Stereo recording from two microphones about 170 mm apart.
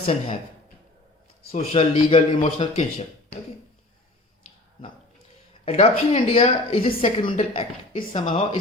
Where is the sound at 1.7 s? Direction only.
35° left (ahead or behind).